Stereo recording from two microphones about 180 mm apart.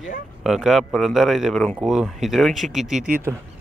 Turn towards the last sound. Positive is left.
turn(degrees=-10)  # may be behind; listen again after turning